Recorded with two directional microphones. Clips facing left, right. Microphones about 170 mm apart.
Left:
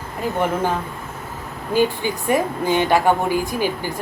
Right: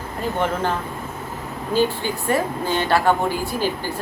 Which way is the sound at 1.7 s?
15° left (ahead or behind).